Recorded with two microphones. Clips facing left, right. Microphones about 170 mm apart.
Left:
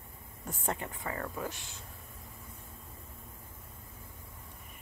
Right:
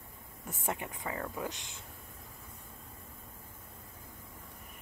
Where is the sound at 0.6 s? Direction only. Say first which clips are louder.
Left 1 dB; 15° right (ahead or behind).